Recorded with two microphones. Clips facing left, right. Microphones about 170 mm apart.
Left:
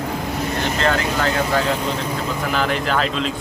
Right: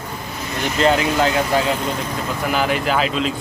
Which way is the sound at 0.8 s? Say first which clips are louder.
Right 6 dB; 20° right (ahead or behind).